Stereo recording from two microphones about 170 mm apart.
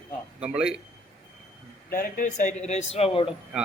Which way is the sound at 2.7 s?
35° left (ahead or behind).